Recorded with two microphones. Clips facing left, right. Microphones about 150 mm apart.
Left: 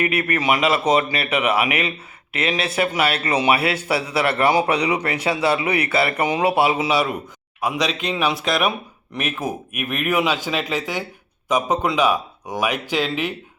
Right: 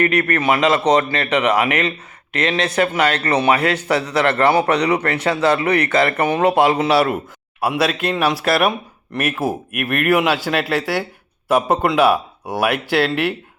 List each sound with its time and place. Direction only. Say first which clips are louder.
0.0 s a man's voice: right 4 dB; 10° left (ahead or behind); by 12.6 s 10° right (ahead or behind)